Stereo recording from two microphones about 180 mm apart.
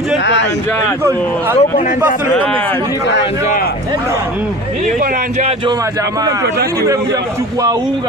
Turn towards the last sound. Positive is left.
turn(degrees=-20)  # may be behind; listen again after turning